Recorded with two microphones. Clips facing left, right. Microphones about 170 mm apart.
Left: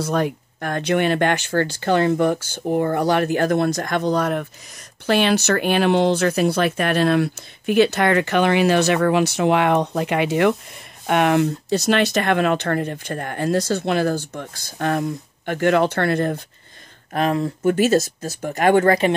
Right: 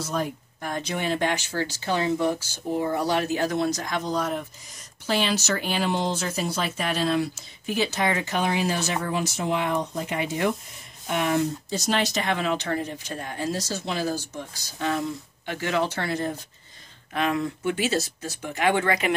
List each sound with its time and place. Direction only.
0.0 s speech: 70° left (ahead or behind)
17.1 s speech: 35° left (ahead or behind)